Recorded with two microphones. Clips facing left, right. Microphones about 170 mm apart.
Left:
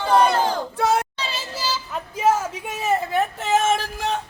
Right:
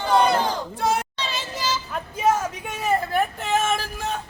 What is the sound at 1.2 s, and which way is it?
Child singing, 5° left (ahead or behind).